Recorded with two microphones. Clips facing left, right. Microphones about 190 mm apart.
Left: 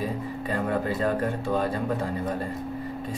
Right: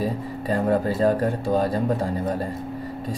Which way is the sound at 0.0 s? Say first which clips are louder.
Right 3 dB; 35° right (ahead or behind).